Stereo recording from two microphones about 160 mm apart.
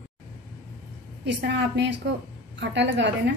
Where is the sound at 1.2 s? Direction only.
90° right.